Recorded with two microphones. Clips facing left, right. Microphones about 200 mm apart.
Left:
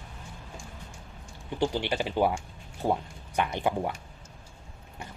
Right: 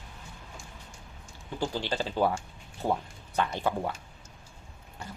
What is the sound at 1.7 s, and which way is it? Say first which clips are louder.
Speech: left 2 dB; 15° left (ahead or behind).